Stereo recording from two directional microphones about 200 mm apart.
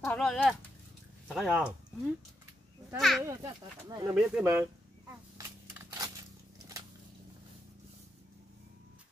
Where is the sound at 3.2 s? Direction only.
15° right (ahead or behind).